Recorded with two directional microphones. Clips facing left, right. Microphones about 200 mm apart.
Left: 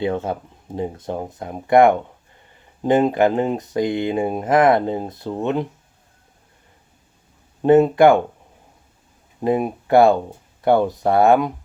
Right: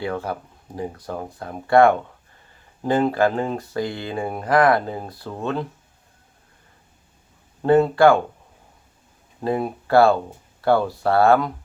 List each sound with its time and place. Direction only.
0.0 s speech: 20° left (ahead or behind)
7.6 s speech: 20° left (ahead or behind)
9.4 s speech: 20° left (ahead or behind)